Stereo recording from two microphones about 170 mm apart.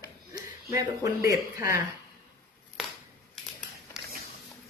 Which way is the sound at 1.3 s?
20° right (ahead or behind).